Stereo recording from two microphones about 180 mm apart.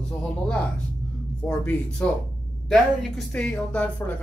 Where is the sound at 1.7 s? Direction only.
5° left (ahead or behind).